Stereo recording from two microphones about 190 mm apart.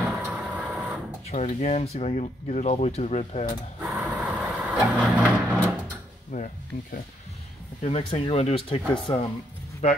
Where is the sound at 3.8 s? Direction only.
Centre (ahead or behind).